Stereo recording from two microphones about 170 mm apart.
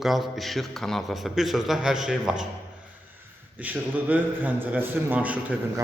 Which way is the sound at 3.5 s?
10° right (ahead or behind).